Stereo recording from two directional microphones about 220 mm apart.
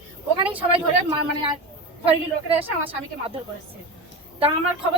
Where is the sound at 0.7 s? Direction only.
25° right (ahead or behind).